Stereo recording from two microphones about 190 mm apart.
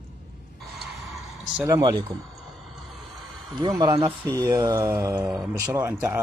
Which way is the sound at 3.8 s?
25° right (ahead or behind).